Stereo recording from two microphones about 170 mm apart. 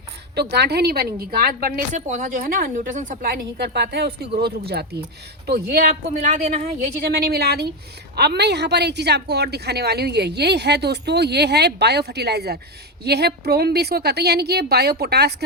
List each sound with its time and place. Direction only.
0.3 s a woman's voice: 75° right (ahead or behind); by 3.4 s 50° right (ahead or behind)
3.6 s a woman's voice: 75° right (ahead or behind)
6.3 s a woman's voice: 40° right (ahead or behind)
7.0 s a woman's voice: 70° right (ahead or behind)